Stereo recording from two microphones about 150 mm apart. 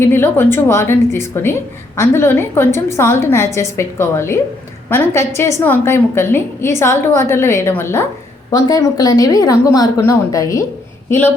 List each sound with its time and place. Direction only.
0.0 s a woman's voice: 15° left (ahead or behind)